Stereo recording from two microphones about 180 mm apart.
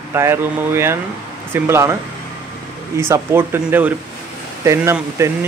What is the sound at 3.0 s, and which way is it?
Speech, 15° right (ahead or behind).